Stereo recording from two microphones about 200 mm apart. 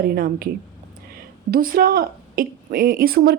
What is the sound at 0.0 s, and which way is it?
Speech, 50° right (ahead or behind).